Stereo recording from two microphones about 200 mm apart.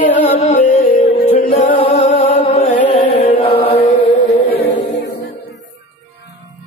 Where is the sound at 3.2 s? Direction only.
30° left (ahead or behind).